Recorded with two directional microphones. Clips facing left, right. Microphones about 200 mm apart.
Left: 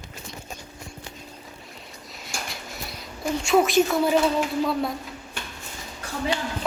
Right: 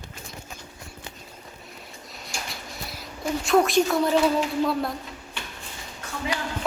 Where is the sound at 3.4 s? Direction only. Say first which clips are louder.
Left 1 dB; centre (ahead or behind).